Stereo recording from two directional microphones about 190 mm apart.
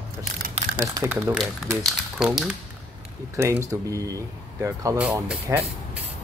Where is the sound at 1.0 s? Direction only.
5° right (ahead or behind).